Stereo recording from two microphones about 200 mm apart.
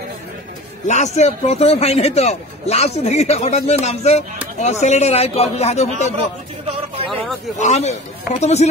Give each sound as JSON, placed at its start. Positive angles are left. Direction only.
{"t": 0.8, "sound": "a man's voice", "side_deg": 35}
{"t": 7.5, "sound": "a man's voice", "side_deg": 35}